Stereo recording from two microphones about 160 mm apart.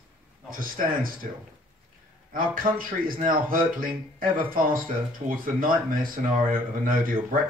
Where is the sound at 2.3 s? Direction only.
60° right (ahead or behind).